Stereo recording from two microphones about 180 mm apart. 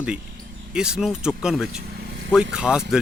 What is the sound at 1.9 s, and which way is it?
Vehicle, 65° right (ahead or behind).